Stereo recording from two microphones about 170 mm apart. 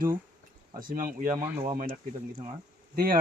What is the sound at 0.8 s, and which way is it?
Speech, 55° right (ahead or behind).